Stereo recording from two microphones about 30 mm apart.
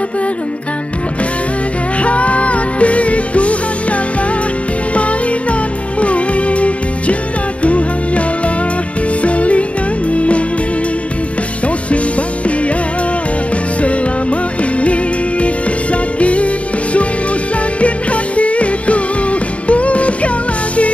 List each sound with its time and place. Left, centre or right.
2.0 s music: left
9.2 s music: left
13.7 s music: left
17.7 s music: left